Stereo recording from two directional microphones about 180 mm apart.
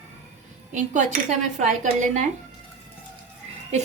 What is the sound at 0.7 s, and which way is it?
Speech, 40° right (ahead or behind).